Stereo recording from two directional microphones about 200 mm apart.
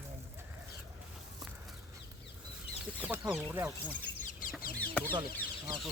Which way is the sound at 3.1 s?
10° right (ahead or behind).